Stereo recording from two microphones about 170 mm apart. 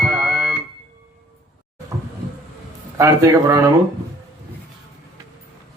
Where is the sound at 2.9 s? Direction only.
20° right (ahead or behind).